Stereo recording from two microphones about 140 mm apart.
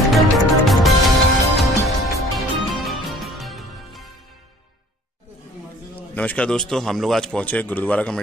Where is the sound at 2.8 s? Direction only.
Centre (ahead or behind).